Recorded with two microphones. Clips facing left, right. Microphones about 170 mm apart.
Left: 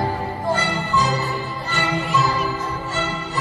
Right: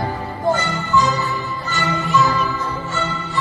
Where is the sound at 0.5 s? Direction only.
30° left (ahead or behind).